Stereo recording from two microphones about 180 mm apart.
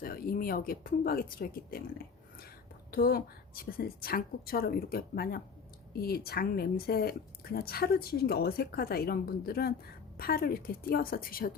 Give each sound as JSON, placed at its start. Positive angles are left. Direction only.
{"t": 0.0, "sound": "a woman's voice", "side_deg": 55}